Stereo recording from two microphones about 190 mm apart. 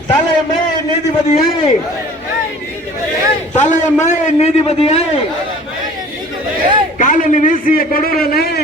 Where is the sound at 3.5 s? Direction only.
40° left (ahead or behind).